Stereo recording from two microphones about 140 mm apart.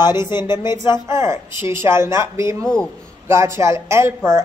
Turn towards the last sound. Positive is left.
turn(degrees=-20)  # may be behind; listen again after turning